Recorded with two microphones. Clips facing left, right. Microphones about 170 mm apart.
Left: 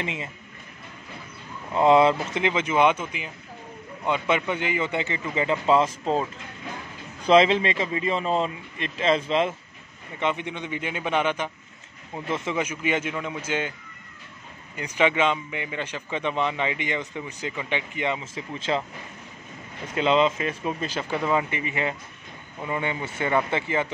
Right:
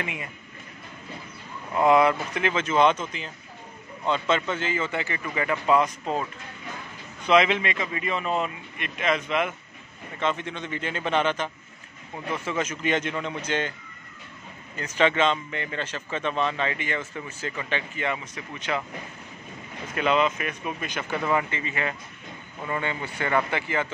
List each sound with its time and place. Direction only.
0.0 s speech: 25° left (ahead or behind)
1.8 s a man's voice: 25° left (ahead or behind)
7.2 s speech: 30° left (ahead or behind)
10.1 s a man's voice: 15° left (ahead or behind)
14.8 s a man's voice: 10° left (ahead or behind)
19.9 s speech: 25° left (ahead or behind)
21.1 s speech: 20° left (ahead or behind)